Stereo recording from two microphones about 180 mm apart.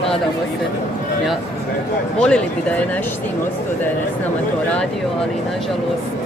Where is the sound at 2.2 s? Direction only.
5° left (ahead or behind).